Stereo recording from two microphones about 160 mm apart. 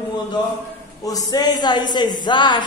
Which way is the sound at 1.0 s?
20° left (ahead or behind).